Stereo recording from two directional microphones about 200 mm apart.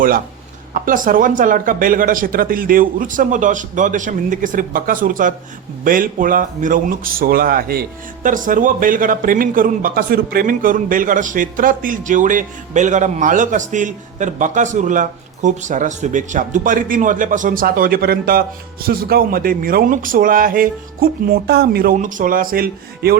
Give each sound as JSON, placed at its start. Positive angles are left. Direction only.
{"t": 0.7, "sound": "speech", "side_deg": -40}